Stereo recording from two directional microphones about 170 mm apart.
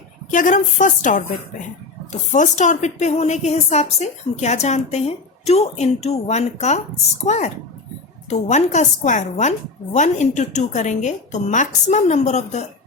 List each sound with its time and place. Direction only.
0.3 s a woman's voice: 50° left (ahead or behind)
2.3 s a woman's voice: 45° left (ahead or behind)